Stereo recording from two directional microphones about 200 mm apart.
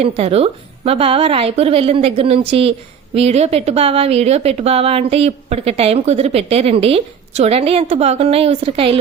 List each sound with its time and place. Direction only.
0.0 s speech: 30° right (ahead or behind)